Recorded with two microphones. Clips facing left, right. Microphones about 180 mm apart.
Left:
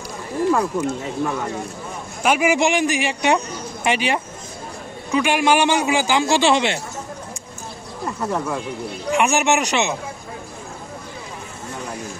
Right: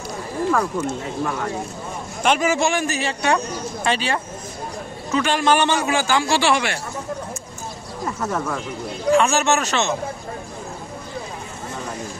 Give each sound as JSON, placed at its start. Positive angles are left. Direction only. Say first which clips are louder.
{"t": 0.5, "sound": "a man's voice", "louder": "left 2 dB", "side_deg": 10}
{"t": 9.1, "sound": "a man's voice", "louder": "right 1 dB", "side_deg": 15}